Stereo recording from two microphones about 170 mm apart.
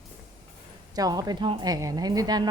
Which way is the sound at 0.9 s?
20° right (ahead or behind).